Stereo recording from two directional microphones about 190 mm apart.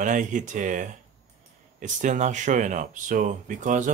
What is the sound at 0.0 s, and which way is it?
Speech, 40° right (ahead or behind).